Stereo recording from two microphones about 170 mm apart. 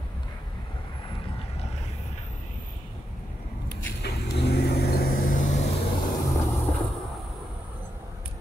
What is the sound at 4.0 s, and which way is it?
Vehicle, 75° left (ahead or behind).